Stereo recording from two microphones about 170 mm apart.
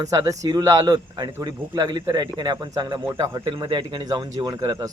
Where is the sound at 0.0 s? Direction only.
20° right (ahead or behind).